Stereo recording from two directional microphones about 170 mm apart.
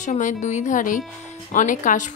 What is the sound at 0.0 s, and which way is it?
A woman's voice, 45° left (ahead or behind).